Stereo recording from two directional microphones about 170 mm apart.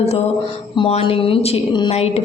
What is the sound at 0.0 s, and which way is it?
A woman's voice, 35° left (ahead or behind).